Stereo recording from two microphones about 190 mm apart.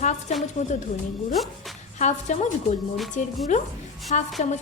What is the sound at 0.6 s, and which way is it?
Speech, 40° left (ahead or behind).